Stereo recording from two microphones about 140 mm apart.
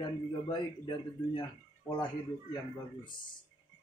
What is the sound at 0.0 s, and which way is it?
A man's voice, 30° left (ahead or behind).